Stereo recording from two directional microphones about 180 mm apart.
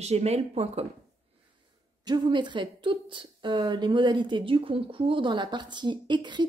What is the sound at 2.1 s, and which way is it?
A woman's voice, 25° right (ahead or behind).